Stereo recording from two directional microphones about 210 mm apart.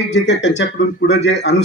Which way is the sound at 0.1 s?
55° left (ahead or behind).